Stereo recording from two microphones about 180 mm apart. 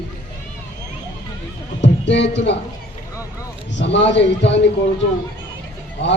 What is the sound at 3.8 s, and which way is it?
Speech, 80° left.